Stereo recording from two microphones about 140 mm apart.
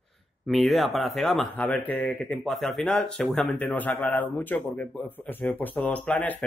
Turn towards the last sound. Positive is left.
turn(degrees=10)  # may be behind; listen again after turning